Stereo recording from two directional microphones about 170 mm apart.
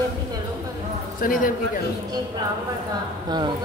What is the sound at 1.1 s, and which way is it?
Speech, 55° left (ahead or behind).